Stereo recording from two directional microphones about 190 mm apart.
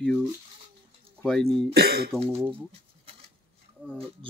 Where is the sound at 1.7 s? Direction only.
55° right (ahead or behind).